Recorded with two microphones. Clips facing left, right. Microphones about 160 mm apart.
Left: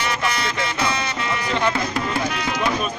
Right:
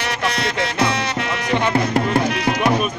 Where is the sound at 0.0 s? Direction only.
70° right (ahead or behind).